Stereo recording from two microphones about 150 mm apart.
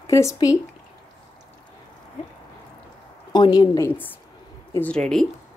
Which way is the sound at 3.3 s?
30° left (ahead or behind).